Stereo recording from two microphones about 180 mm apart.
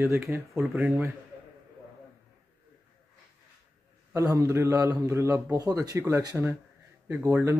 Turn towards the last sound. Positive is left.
turn(degrees=-15)  # may be behind; listen again after turning